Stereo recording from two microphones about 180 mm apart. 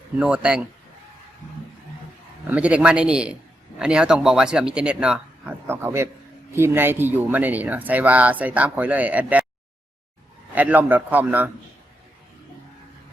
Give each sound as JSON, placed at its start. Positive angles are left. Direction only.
{"t": 0.2, "sound": "speech", "side_deg": -5}
{"t": 2.5, "sound": "speech", "side_deg": -5}
{"t": 10.5, "sound": "speech", "side_deg": -10}